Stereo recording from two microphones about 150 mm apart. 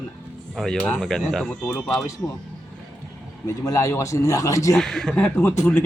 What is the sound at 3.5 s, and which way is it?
Speech, 20° left (ahead or behind).